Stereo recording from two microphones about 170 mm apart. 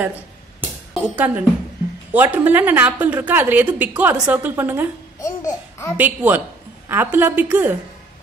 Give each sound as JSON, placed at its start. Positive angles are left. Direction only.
{"t": 0.0, "sound": "music", "side_deg": -10}
{"t": 0.9, "sound": "a woman's voice", "side_deg": -10}
{"t": 5.2, "sound": "babbling", "side_deg": 20}
{"t": 5.9, "sound": "a woman's voice", "side_deg": -10}